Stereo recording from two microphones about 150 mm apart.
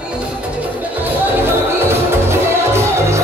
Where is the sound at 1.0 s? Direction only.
15° right (ahead or behind).